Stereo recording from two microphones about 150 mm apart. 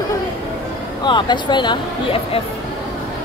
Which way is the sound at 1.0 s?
30° left (ahead or behind).